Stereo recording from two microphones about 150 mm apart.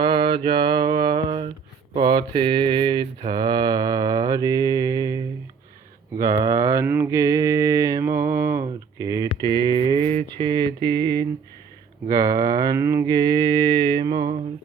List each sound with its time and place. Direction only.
0.0 s mantra: 35° right (ahead or behind)